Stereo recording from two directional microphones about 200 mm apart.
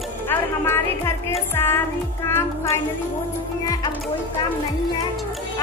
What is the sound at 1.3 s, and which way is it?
Speech, 10° left (ahead or behind).